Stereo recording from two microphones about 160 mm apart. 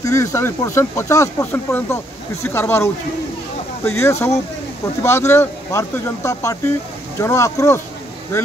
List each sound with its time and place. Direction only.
0.0 s speech: 20° left (ahead or behind)